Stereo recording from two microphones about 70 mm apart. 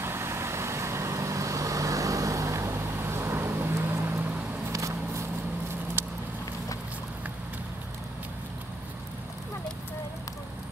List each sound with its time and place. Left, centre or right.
0.0 s vehicle: right
4.7 s a sound: right
6.0 s vehicle: right